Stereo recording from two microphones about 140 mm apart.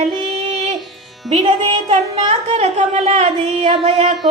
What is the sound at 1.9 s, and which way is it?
Music, 50° right (ahead or behind).